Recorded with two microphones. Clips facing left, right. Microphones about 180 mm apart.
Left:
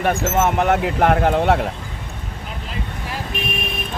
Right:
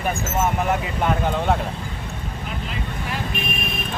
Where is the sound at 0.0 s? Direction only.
75° left (ahead or behind).